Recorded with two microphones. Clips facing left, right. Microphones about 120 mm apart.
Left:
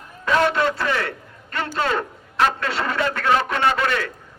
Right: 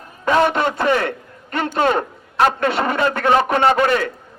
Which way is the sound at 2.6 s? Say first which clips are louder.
Right 5 dB; 20° right (ahead or behind).